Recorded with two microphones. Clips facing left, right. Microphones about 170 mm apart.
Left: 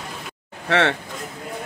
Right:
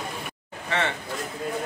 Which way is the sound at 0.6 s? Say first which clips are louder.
Left 7 dB; 90° left.